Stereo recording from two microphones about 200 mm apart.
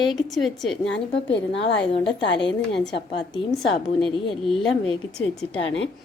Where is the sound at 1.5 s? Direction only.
60° left (ahead or behind).